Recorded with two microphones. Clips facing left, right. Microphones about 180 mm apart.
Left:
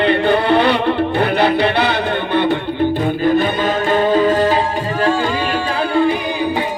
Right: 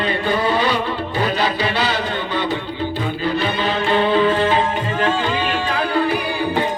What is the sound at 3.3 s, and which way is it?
Music, 45° left (ahead or behind).